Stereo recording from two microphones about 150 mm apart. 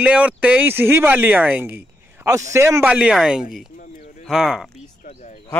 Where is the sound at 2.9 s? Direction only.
5° right (ahead or behind).